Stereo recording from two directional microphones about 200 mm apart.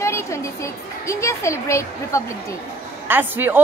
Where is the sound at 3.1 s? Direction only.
10° right (ahead or behind).